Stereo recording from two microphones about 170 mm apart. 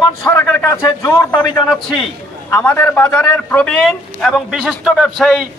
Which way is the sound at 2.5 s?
10° left (ahead or behind).